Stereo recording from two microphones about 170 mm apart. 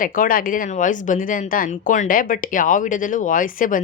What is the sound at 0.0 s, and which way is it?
Speech, 55° left (ahead or behind).